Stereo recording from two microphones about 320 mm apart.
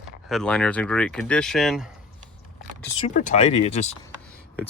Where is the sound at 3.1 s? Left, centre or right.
Left.